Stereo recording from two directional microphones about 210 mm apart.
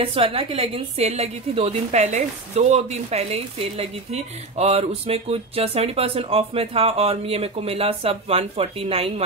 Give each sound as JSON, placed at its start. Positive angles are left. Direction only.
{"t": 0.0, "sound": "a woman's voice", "side_deg": -25}